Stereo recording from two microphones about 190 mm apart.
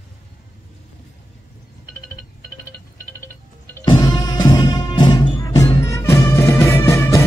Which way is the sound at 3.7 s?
20° left (ahead or behind).